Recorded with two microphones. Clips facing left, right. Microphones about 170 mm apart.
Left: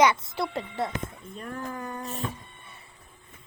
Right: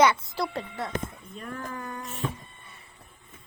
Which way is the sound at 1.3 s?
35° left (ahead or behind).